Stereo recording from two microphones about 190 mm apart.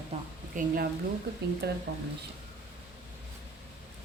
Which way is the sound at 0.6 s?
40° right (ahead or behind).